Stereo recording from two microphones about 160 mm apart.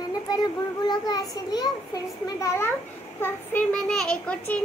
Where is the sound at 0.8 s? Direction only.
25° left (ahead or behind).